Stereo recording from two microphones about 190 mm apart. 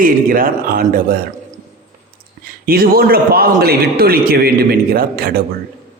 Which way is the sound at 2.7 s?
50° right (ahead or behind).